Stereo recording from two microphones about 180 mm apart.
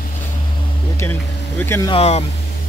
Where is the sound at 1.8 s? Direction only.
35° left (ahead or behind).